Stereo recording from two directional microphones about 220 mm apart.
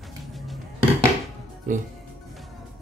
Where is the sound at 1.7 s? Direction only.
35° right (ahead or behind).